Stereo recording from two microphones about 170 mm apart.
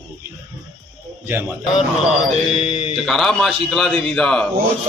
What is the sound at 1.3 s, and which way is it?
Speech, 15° right (ahead or behind).